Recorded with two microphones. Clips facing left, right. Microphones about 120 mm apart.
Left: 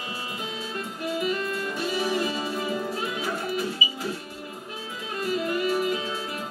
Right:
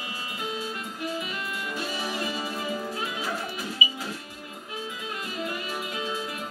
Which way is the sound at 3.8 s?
15° right (ahead or behind).